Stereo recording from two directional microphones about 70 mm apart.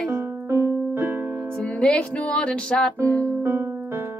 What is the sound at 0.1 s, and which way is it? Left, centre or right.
Music, right.